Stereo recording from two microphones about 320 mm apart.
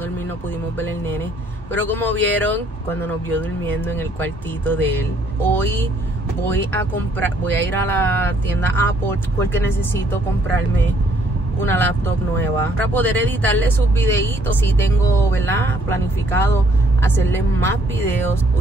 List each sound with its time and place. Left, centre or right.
1.7 s speech: centre
11.6 s speech: centre